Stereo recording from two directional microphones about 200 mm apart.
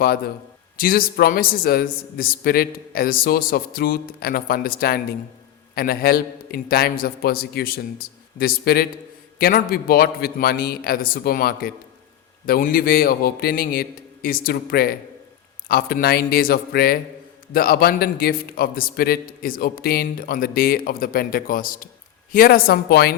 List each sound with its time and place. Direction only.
0.8 s a man's voice: 45° left (ahead or behind)